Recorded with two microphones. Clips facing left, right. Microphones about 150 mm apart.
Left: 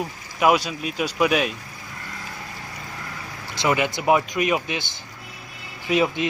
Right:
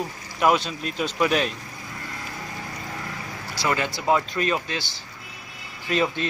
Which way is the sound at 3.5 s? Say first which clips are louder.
Left 4 dB; 15° left (ahead or behind).